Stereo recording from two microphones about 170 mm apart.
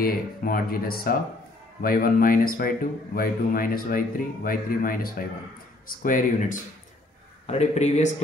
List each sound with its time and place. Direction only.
0.0 s speech: 55° left (ahead or behind)
7.4 s speech: 40° left (ahead or behind)